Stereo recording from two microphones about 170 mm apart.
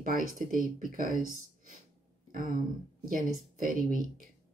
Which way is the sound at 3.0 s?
55° right (ahead or behind).